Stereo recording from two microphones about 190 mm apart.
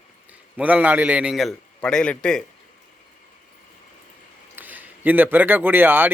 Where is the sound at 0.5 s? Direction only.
5° right (ahead or behind).